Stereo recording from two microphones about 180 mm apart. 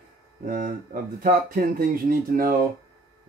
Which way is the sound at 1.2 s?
50° right (ahead or behind).